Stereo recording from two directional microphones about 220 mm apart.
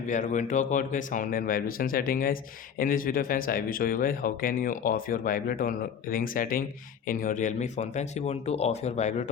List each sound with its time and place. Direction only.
0.1 s speech: 35° left (ahead or behind)